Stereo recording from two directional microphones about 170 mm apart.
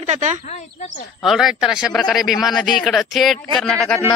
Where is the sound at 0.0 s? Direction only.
45° right (ahead or behind).